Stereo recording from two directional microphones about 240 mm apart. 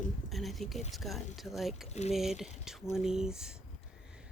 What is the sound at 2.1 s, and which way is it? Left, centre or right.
Speech, centre.